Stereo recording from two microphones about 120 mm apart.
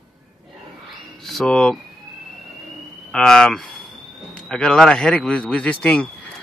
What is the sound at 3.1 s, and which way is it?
A man's voice, 5° left (ahead or behind).